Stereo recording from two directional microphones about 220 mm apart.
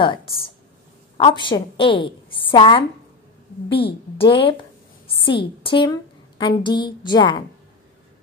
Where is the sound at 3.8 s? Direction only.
25° left (ahead or behind).